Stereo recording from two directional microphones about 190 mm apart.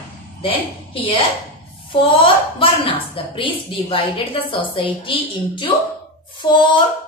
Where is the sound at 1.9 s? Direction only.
25° left (ahead or behind).